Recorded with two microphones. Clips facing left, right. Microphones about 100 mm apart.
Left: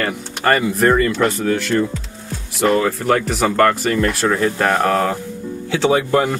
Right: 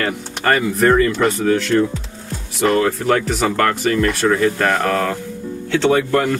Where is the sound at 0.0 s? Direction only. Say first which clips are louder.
Left 1 dB; centre (ahead or behind).